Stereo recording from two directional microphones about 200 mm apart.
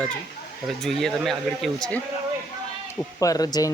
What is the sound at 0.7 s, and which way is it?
Speech, centre (ahead or behind).